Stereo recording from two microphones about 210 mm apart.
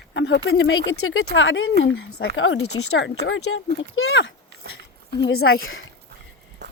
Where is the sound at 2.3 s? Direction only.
70° left (ahead or behind).